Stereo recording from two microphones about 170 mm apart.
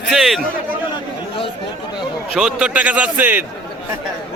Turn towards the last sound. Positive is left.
turn(degrees=-10)  # may be behind; listen again after turning